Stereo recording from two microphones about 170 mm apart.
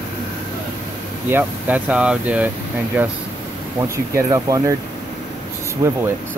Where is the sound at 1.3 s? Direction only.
10° right (ahead or behind).